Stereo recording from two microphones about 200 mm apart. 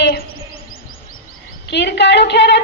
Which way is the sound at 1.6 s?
60° left (ahead or behind).